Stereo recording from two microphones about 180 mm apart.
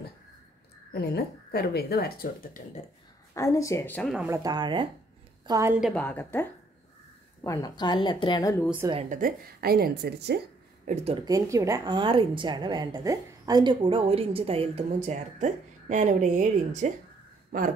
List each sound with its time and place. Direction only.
0.9 s speech: 65° left (ahead or behind)
3.3 s speech: 15° left (ahead or behind)
4.3 s a woman's voice: 20° right (ahead or behind)
5.8 s a woman's voice: 5° left (ahead or behind); by 8.6 s 20° left (ahead or behind)
9.1 s a woman's voice: 55° right (ahead or behind)
11.2 s a woman's voice: 20° right (ahead or behind); by 16.9 s 40° right (ahead or behind)
17.5 s a sound: 50° right (ahead or behind)